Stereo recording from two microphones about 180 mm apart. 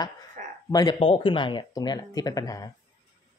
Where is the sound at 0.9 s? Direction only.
30° left (ahead or behind).